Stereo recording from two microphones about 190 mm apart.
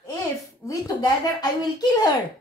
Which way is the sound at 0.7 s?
20° left (ahead or behind).